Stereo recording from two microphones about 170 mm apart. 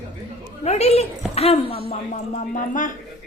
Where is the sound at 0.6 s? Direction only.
40° left (ahead or behind).